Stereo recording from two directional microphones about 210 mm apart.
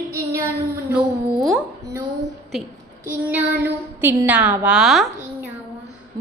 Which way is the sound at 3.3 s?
10° right (ahead or behind).